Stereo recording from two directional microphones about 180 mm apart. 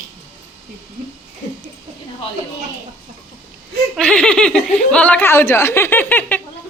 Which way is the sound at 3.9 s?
5° left (ahead or behind).